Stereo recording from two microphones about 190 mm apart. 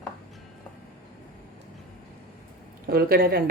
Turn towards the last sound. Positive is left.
turn(degrees=-50)  # may be behind; listen again after turning